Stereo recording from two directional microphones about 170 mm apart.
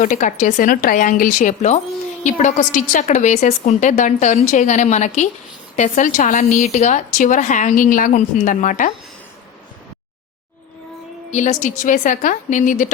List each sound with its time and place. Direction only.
0.0 s a woman's voice: 50° left (ahead or behind)
11.3 s a woman's voice: 45° left (ahead or behind)